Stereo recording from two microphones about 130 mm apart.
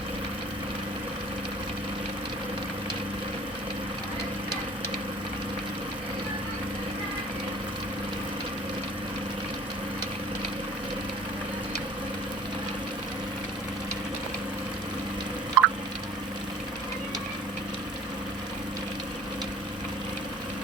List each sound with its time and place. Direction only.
15.6 s drip: centre (ahead or behind)